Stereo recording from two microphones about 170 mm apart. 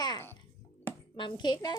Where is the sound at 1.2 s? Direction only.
25° left (ahead or behind).